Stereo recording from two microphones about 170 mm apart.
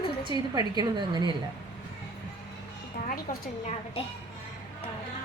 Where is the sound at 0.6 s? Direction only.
25° right (ahead or behind).